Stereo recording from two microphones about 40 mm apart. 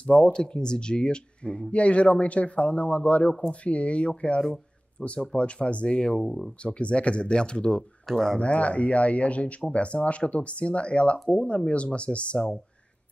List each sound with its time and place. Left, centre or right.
0.0 s speech: left
8.1 s speech: centre
8.4 s speech: left